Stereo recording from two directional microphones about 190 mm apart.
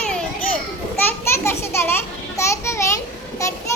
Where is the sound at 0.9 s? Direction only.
10° left (ahead or behind).